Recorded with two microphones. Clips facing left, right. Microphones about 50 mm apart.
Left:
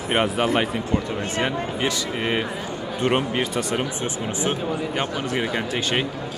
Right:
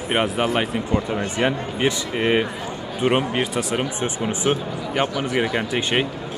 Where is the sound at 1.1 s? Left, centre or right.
Centre.